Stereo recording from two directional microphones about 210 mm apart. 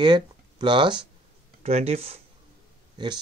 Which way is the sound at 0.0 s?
20° right (ahead or behind).